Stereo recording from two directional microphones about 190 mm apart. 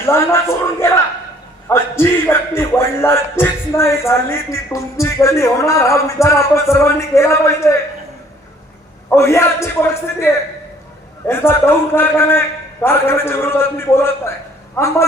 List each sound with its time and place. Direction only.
0.0 s a man's voice: 15° left (ahead or behind)
9.0 s a man's voice: 15° left (ahead or behind)